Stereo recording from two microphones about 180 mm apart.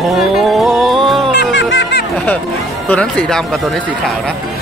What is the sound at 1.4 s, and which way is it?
Music, 85° left.